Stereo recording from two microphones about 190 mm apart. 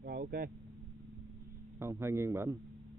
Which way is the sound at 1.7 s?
15° right (ahead or behind).